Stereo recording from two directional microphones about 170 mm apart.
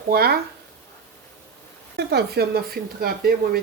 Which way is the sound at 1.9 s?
70° right (ahead or behind).